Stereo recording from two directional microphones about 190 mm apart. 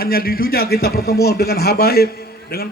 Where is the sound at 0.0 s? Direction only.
50° left (ahead or behind).